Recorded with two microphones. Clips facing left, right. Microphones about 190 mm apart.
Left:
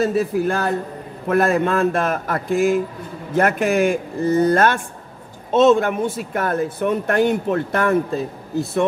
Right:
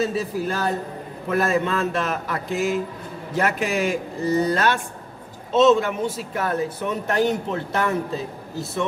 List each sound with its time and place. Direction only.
0.0 s speech: 55° left (ahead or behind)